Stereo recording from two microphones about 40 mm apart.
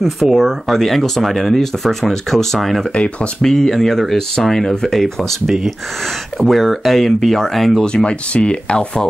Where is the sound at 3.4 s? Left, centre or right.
Centre.